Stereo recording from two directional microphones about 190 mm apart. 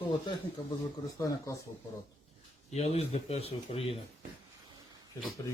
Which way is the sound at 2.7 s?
35° left (ahead or behind).